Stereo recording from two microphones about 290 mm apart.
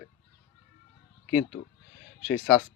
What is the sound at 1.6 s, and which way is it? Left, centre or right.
Speech, centre.